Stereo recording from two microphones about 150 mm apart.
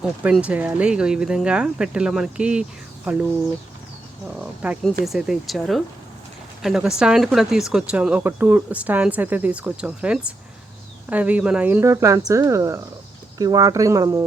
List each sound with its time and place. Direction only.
0.0 s speech: 5° right (ahead or behind)
4.3 s speech: 5° right (ahead or behind)